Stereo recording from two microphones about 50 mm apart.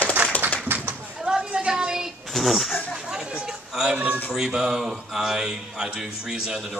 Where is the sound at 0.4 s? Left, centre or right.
Right.